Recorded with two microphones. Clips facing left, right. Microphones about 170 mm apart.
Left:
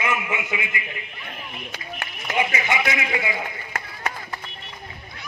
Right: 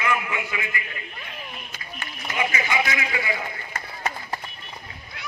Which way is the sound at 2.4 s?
20° left (ahead or behind).